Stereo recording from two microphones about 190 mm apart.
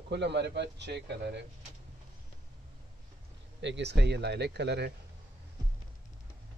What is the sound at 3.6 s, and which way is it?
Speech, 65° right (ahead or behind).